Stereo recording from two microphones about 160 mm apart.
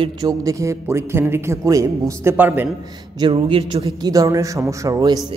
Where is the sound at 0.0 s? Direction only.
25° right (ahead or behind).